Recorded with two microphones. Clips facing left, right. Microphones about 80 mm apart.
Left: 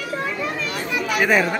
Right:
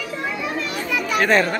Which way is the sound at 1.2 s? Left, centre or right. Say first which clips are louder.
Right 1 dB; centre.